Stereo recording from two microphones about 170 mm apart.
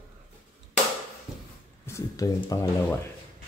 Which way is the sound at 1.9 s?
20° left (ahead or behind).